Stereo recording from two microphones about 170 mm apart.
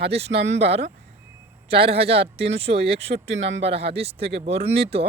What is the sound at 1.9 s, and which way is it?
Speech, 35° right (ahead or behind).